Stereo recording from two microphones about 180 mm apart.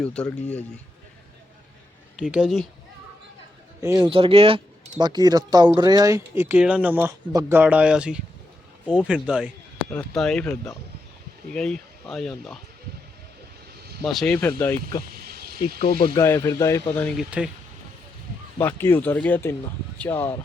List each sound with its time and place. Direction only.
0.0 s speech: 5° left (ahead or behind)
2.1 s speech: 5° right (ahead or behind)
3.8 s speech: 15° right (ahead or behind)
4.1 s speech: 30° right (ahead or behind); by 9.5 s 5° right (ahead or behind)
9.9 s speech: 5° left (ahead or behind)
11.5 s speech: 5° left (ahead or behind)
14.0 s speech: centre (ahead or behind)
14.3 s speech: 10° left (ahead or behind)
15.1 s a sound: 60° right (ahead or behind)
16.1 s speech: 15° left (ahead or behind)
17.2 s speech: 5° right (ahead or behind)
18.6 s speech: 10° left (ahead or behind)